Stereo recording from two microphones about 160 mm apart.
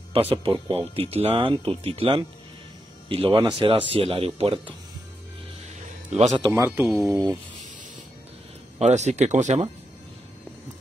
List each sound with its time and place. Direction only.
0.3 s speech: 35° right (ahead or behind)
6.1 s speech: 40° right (ahead or behind)
6.4 s speech: 20° right (ahead or behind)
6.9 s speech: centre (ahead or behind)
8.7 s speech: 45° right (ahead or behind)